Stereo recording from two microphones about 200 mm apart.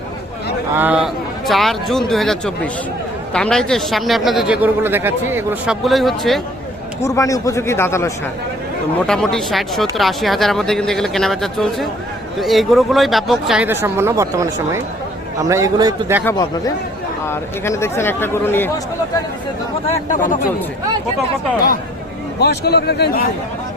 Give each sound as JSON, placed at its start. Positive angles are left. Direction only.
{"t": 0.7, "sound": "speech", "side_deg": -10}
{"t": 5.8, "sound": "speech", "side_deg": 0}
{"t": 7.0, "sound": "speech", "side_deg": 15}
{"t": 9.0, "sound": "a man's voice", "side_deg": 5}
{"t": 16.2, "sound": "speech", "side_deg": 20}
{"t": 20.1, "sound": "speech", "side_deg": 40}
{"t": 22.4, "sound": "a man's voice", "side_deg": 55}